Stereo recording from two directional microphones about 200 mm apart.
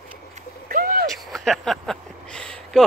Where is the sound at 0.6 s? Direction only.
45° right (ahead or behind).